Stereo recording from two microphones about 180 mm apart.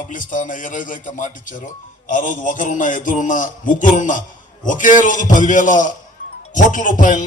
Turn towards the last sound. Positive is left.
turn(degrees=45)  # may be behind; listen again after turning